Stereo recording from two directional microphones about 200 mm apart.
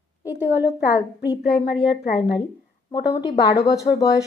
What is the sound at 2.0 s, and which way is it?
Speech, 45° left (ahead or behind).